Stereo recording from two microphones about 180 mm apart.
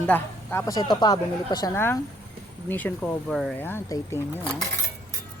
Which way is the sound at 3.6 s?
15° left (ahead or behind).